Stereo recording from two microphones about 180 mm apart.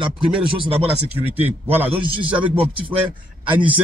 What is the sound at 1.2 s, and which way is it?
Speech, 10° right (ahead or behind).